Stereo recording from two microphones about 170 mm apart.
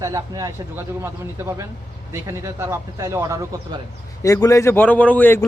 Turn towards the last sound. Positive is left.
turn(degrees=10)  # may be behind; listen again after turning